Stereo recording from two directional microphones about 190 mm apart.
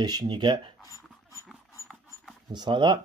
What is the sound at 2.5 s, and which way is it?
Speech, 25° right (ahead or behind).